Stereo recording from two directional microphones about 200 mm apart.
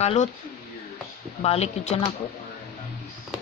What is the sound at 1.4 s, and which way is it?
Speech, 30° left (ahead or behind).